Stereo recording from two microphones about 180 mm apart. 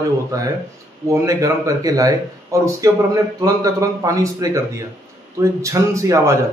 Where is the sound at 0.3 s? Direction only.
20° right (ahead or behind).